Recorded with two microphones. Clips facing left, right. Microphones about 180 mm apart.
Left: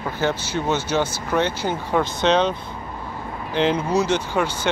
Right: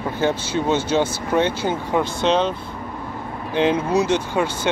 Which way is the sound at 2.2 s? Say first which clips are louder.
Left 1 dB; 5° right (ahead or behind).